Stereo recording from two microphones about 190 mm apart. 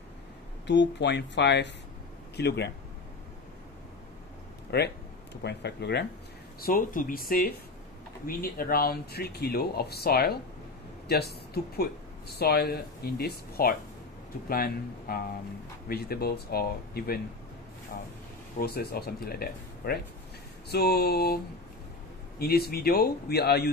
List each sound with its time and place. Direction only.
0.7 s speech: 65° left (ahead or behind)
4.6 s speech: 60° left (ahead or behind)
6.6 s speech: 45° left (ahead or behind)
18.6 s speech: 55° left (ahead or behind)
22.4 s speech: 55° left (ahead or behind)